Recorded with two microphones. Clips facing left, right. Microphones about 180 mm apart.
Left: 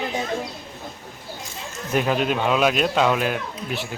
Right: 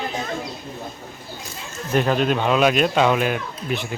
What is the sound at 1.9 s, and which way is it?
Speech, 5° left (ahead or behind).